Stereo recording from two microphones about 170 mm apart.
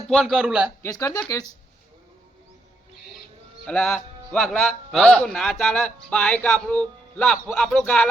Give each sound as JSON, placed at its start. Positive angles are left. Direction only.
{"t": 0.1, "sound": "a man's voice", "side_deg": 0}
{"t": 0.8, "sound": "speech", "side_deg": 15}
{"t": 3.7, "sound": "a man's voice", "side_deg": 5}